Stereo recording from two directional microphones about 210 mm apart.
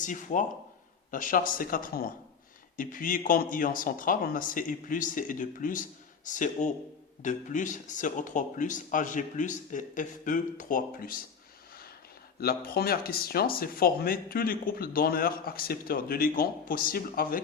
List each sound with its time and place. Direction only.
0.0 s speech: 35° left (ahead or behind)
12.4 s speech: 45° left (ahead or behind)